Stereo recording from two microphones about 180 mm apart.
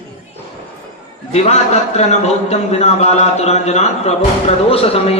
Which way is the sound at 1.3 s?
35° left (ahead or behind).